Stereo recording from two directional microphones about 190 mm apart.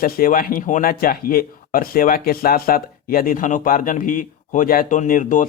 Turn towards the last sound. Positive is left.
turn(degrees=45)  # may be behind; listen again after turning